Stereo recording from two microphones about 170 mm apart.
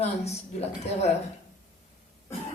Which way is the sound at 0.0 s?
40° left (ahead or behind).